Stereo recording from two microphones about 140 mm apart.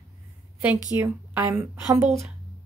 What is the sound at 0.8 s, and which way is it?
A woman's voice, 20° right (ahead or behind).